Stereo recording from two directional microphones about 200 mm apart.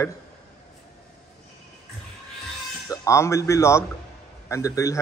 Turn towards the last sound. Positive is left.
turn(degrees=15)  # may be behind; listen again after turning